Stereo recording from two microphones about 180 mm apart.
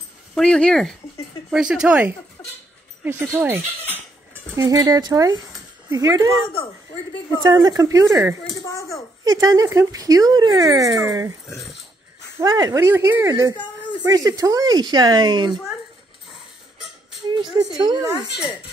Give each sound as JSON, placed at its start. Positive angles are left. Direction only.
{"t": 0.3, "sound": "speech", "side_deg": 5}
{"t": 7.4, "sound": "speech", "side_deg": -20}
{"t": 8.6, "sound": "a child's voice", "side_deg": 15}
{"t": 9.2, "sound": "speech", "side_deg": -20}
{"t": 12.4, "sound": "speech", "side_deg": -20}
{"t": 17.3, "sound": "a woman's voice", "side_deg": -25}